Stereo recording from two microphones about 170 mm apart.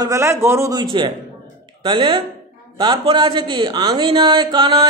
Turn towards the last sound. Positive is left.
turn(degrees=-25)  # may be behind; listen again after turning